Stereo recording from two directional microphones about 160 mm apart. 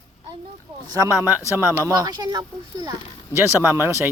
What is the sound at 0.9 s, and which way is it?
Speech, 15° right (ahead or behind).